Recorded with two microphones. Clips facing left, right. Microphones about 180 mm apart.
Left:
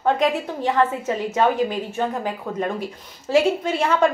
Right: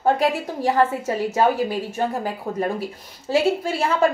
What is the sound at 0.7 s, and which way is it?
Speech, 35° right (ahead or behind).